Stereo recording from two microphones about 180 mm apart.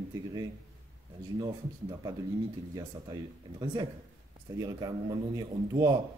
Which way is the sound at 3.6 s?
25° right (ahead or behind).